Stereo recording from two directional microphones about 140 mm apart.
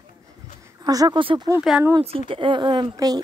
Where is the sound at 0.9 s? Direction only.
30° right (ahead or behind).